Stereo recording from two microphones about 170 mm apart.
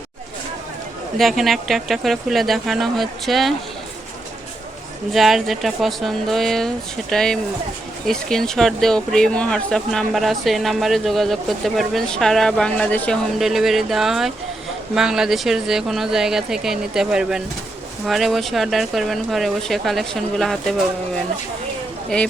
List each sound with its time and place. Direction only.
1.2 s speech: centre (ahead or behind)
5.1 s speech: centre (ahead or behind)
22.1 s speech: 5° left (ahead or behind)